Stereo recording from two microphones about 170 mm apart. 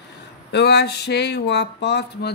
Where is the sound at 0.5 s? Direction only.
75° left (ahead or behind).